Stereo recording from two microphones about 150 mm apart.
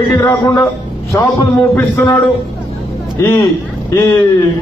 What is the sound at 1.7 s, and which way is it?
Speech, 15° left (ahead or behind).